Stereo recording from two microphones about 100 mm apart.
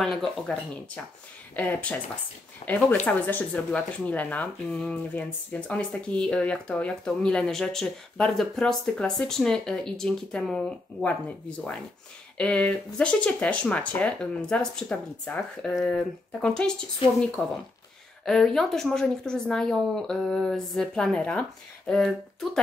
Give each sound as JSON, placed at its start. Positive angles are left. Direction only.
{"t": 0.0, "sound": "speech", "side_deg": 5}
{"t": 11.1, "sound": "speech", "side_deg": 15}
{"t": 17.0, "sound": "speech", "side_deg": 60}
{"t": 17.4, "sound": "speech", "side_deg": 10}